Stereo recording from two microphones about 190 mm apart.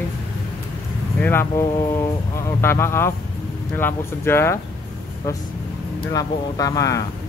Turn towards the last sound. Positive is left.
turn(degrees=20)  # may be behind; listen again after turning